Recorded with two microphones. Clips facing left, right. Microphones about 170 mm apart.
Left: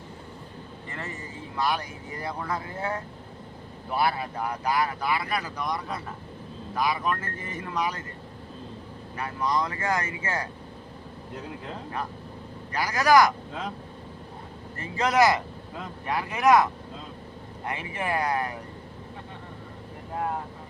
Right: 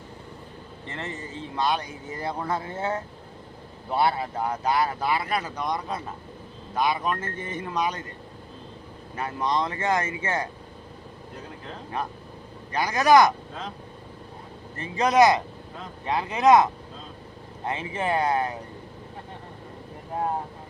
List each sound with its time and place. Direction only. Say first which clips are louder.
0.9 s speech: right 3 dB; 25° right (ahead or behind)
9.1 s speech: right 1 dB; 25° right (ahead or behind)
12.7 s speech: right 2 dB; 20° right (ahead or behind)
14.8 s speech: right 3 dB; 20° right (ahead or behind)
17.7 s speech: right 3 dB; 25° right (ahead or behind)